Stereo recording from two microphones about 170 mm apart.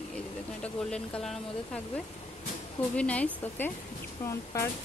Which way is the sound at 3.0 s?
10° left (ahead or behind).